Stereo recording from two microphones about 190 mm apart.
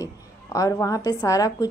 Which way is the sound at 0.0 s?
15° left (ahead or behind).